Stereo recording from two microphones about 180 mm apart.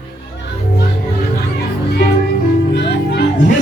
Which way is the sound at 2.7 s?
70° left (ahead or behind).